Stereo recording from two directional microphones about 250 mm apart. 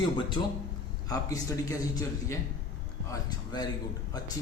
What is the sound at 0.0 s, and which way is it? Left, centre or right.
A man's voice, centre.